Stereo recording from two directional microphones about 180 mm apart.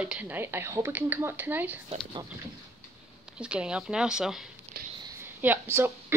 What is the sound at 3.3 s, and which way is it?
Speech, 5° right (ahead or behind).